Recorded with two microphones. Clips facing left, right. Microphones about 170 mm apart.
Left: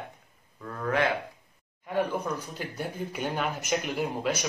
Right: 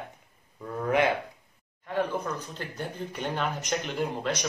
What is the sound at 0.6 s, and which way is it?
Speech, 20° right (ahead or behind).